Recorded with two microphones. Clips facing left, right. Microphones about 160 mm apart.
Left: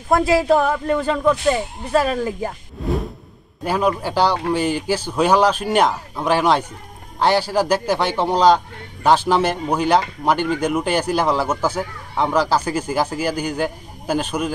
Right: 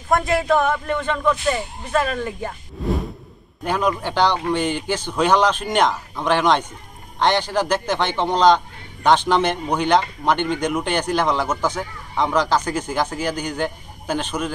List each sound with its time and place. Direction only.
0.1 s speech: 30° left (ahead or behind)
2.8 s whoosh: centre (ahead or behind)
3.6 s speech: 5° left (ahead or behind)